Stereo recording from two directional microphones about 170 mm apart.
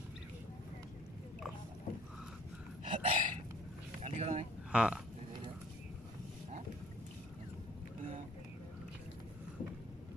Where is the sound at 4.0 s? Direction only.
40° right (ahead or behind).